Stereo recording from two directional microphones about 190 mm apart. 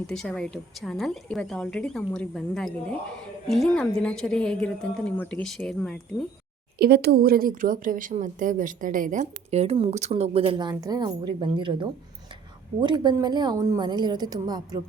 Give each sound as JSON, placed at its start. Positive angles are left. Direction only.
{"t": 0.1, "sound": "speech", "side_deg": 5}
{"t": 6.7, "sound": "a woman's voice", "side_deg": -55}